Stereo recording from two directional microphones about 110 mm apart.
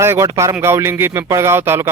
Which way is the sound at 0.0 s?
25° right (ahead or behind).